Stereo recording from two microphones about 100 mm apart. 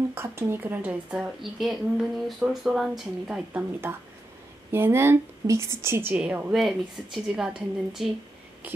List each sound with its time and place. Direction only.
0.1 s speech: 25° right (ahead or behind)
1.1 s speech: 5° right (ahead or behind)
3.3 s speech: 15° right (ahead or behind)
6.1 s speech: 15° right (ahead or behind)
6.5 s speech: centre (ahead or behind)